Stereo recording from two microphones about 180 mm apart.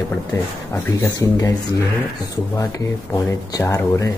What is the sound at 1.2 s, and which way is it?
Speech, 20° left (ahead or behind).